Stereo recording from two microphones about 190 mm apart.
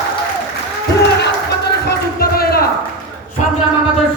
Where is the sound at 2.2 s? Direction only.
55° left (ahead or behind).